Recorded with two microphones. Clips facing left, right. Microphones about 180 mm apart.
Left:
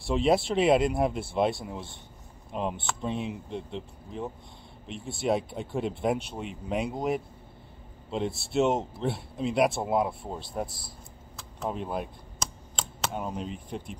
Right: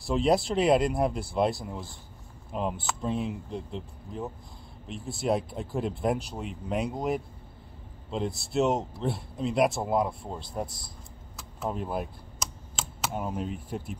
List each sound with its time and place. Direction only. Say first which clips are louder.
0.0 s speech: even; centre (ahead or behind)
11.3 s computer keyboard: even; 5° right (ahead or behind)